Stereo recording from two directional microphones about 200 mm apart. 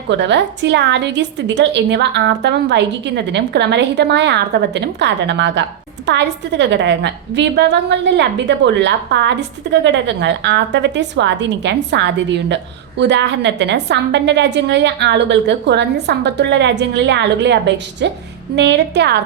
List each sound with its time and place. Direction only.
0.1 s a woman's voice: 60° right (ahead or behind)